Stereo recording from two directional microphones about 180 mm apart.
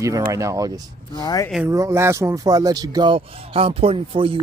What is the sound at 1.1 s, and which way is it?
Speech, 20° left (ahead or behind).